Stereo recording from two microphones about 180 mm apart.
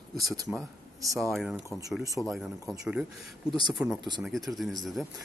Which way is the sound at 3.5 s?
25° right (ahead or behind).